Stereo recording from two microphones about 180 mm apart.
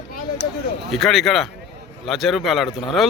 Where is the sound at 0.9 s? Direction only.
Centre (ahead or behind).